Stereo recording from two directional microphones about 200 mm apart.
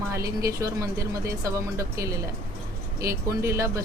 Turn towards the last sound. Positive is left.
turn(degrees=-15)  # may be behind; listen again after turning